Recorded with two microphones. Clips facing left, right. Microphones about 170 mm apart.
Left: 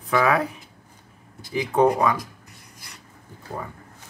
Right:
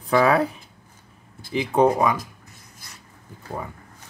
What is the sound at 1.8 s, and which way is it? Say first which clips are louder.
Speech: right 1 dB; 15° right (ahead or behind).